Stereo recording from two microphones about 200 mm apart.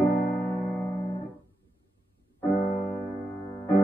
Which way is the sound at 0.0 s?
10° left (ahead or behind).